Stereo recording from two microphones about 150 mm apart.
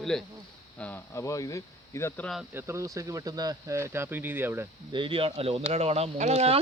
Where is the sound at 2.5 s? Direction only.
20° right (ahead or behind).